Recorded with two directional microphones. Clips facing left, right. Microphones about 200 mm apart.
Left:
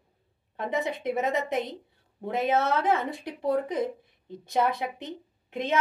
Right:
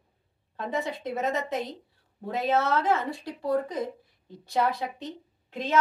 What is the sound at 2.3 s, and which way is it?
A woman's voice, 20° left (ahead or behind).